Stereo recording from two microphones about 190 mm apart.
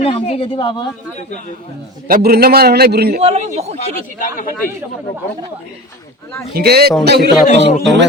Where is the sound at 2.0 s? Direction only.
50° right (ahead or behind).